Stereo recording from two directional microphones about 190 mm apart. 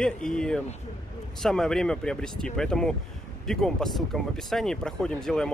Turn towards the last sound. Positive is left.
turn(degrees=5)  # may be behind; listen again after turning